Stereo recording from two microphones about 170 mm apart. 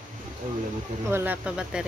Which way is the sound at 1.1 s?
10° right (ahead or behind).